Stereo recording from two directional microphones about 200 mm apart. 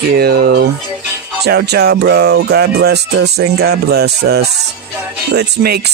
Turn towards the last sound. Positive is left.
turn(degrees=-55)  # may be behind; listen again after turning